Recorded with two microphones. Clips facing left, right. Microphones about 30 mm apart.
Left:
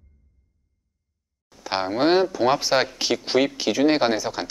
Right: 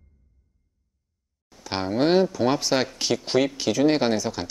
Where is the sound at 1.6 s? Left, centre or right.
Centre.